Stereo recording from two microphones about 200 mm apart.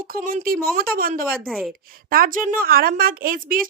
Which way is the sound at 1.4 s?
Centre (ahead or behind).